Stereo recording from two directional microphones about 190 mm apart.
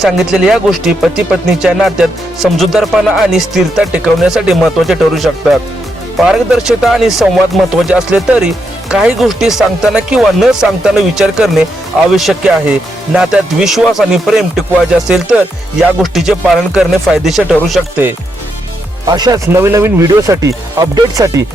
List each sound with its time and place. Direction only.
0.0 s speech: 5° right (ahead or behind)
19.0 s speech: 20° right (ahead or behind)